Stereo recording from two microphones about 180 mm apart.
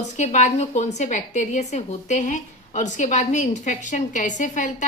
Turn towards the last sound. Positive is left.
turn(degrees=45)  # may be behind; listen again after turning